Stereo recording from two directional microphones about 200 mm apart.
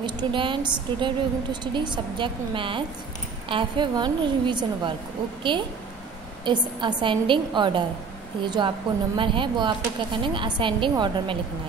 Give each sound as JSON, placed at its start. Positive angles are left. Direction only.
{"t": 0.0, "sound": "a woman's voice", "side_deg": -25}